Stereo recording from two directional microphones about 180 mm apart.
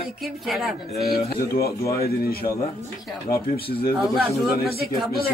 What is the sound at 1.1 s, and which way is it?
Speech, 60° left (ahead or behind).